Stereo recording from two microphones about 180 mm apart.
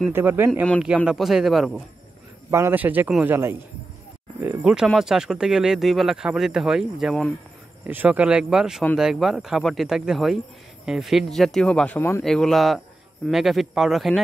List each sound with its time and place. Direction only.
0.1 s a man's voice: 10° right (ahead or behind)
2.5 s a man's voice: 10° right (ahead or behind)